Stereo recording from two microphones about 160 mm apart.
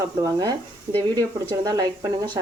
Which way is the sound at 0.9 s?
50° right (ahead or behind).